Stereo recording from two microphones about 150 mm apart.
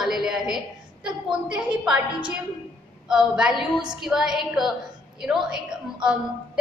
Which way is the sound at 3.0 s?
5° right (ahead or behind).